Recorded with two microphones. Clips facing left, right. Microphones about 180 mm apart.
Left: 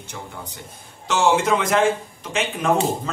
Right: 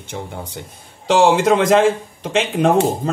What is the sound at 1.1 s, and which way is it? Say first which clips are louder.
Speech: right 5 dB; 70° right (ahead or behind).